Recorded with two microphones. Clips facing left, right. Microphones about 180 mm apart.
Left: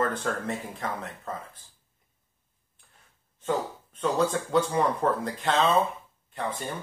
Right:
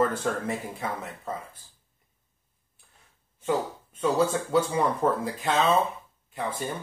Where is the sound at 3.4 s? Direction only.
5° right (ahead or behind).